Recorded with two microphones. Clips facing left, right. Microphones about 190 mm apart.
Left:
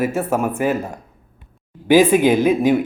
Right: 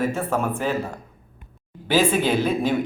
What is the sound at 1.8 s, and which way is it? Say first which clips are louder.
Speech: left 7 dB; 15° left (ahead or behind).